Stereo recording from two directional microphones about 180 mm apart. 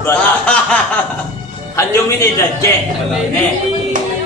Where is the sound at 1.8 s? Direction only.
15° left (ahead or behind).